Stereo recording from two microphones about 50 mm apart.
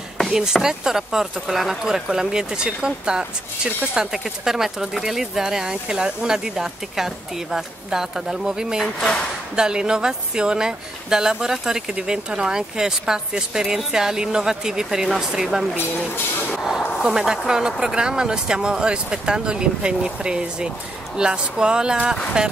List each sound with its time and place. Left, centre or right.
0.3 s speech: centre